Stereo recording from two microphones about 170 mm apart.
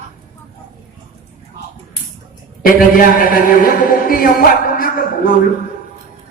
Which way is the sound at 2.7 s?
55° left (ahead or behind).